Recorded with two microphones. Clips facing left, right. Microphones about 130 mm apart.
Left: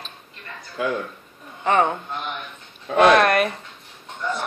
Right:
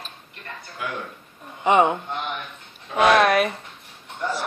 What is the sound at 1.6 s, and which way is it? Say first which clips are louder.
Speech: right 2 dB; 15° right (ahead or behind).